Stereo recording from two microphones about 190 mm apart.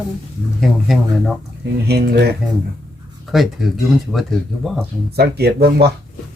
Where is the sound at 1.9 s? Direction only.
60° right (ahead or behind).